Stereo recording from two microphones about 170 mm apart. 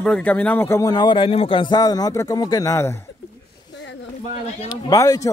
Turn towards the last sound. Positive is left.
turn(degrees=20)  # may be behind; listen again after turning